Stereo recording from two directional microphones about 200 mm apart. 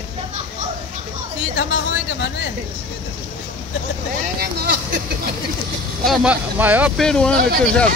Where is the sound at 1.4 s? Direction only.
70° left (ahead or behind).